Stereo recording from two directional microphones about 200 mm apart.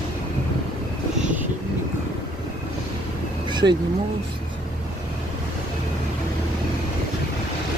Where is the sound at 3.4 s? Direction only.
20° right (ahead or behind).